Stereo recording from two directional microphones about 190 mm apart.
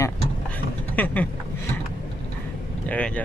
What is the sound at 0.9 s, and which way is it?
Speech, 10° left (ahead or behind).